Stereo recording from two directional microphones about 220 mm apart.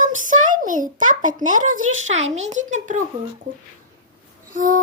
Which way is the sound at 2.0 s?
30° right (ahead or behind).